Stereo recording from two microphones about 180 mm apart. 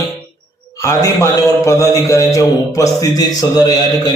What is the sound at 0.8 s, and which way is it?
A man's voice, 15° left (ahead or behind).